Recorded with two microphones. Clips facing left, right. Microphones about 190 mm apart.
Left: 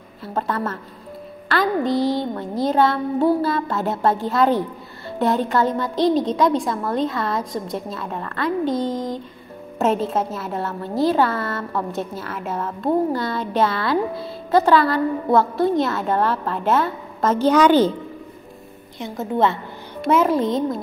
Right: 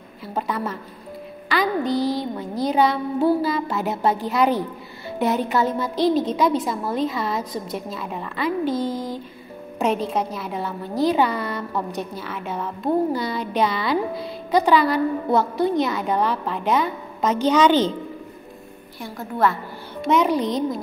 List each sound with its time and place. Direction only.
0.4 s a woman's voice: centre (ahead or behind)
1.9 s a woman's voice: centre (ahead or behind)
11.1 s a woman's voice: 20° right (ahead or behind)
11.5 s a woman's voice: centre (ahead or behind)
18.9 s a woman's voice: 20° left (ahead or behind)
20.1 s a woman's voice: 5° left (ahead or behind)